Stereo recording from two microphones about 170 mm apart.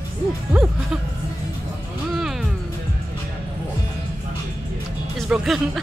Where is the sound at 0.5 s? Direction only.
5° right (ahead or behind).